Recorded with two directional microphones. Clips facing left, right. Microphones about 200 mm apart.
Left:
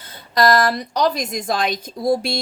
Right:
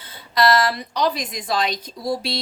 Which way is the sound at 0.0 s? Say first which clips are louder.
Left 2 dB; 45° left (ahead or behind).